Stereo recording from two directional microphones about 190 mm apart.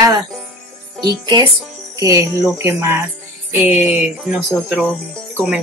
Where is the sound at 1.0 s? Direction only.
20° right (ahead or behind).